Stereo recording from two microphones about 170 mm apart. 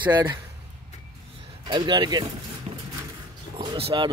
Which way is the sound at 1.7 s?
25° right (ahead or behind).